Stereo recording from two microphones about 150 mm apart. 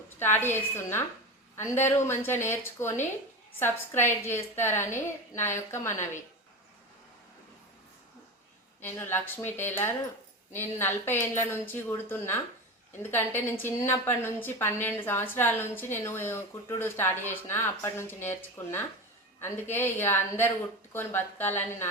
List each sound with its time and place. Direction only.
0.2 s a woman's voice: 15° left (ahead or behind)
8.8 s a woman's voice: 15° left (ahead or behind)